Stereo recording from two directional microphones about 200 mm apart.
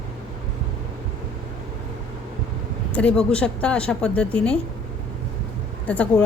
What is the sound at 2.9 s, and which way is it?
A woman's voice, 5° left (ahead or behind).